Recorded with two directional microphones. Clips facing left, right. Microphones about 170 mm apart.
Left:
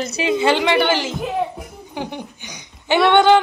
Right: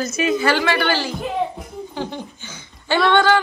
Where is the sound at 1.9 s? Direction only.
15° left (ahead or behind).